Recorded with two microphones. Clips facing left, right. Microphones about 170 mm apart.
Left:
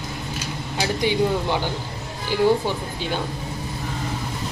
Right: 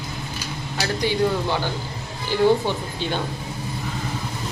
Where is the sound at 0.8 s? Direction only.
15° left (ahead or behind).